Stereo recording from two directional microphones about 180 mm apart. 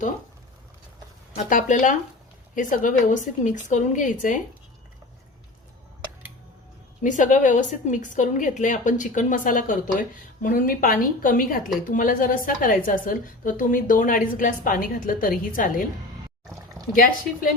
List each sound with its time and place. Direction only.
1.5 s a woman's voice: 45° left (ahead or behind)
7.0 s a woman's voice: 45° left (ahead or behind)
16.9 s a woman's voice: 50° left (ahead or behind)